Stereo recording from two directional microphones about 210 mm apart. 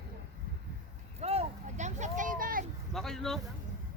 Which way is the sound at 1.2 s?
30° right (ahead or behind).